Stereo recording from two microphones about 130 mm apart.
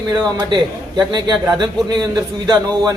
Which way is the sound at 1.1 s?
35° right (ahead or behind).